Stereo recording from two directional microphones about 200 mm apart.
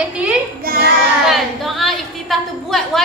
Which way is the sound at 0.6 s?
50° right (ahead or behind).